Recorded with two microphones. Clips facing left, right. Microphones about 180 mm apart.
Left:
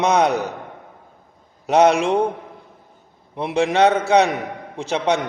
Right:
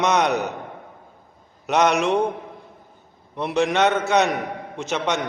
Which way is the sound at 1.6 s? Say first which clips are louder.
Left 4 dB; 30° left (ahead or behind).